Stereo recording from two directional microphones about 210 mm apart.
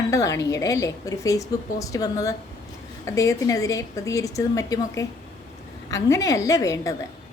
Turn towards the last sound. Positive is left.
turn(degrees=15)  # may be behind; listen again after turning